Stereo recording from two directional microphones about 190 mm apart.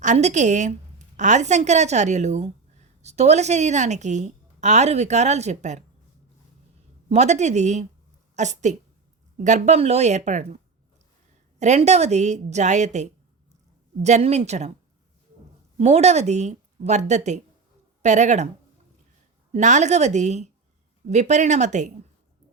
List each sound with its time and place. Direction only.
0.0 s a woman's voice: 40° right (ahead or behind)
7.1 s a woman's voice: 35° right (ahead or behind)
11.6 s a woman's voice: 35° right (ahead or behind)
15.8 s a woman's voice: 35° right (ahead or behind)
19.5 s a woman's voice: 40° right (ahead or behind)